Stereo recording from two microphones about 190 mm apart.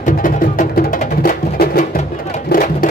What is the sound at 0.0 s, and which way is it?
Music, 45° left (ahead or behind).